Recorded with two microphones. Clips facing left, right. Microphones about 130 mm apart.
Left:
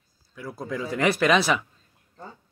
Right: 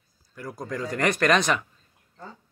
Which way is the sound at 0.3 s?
Centre (ahead or behind).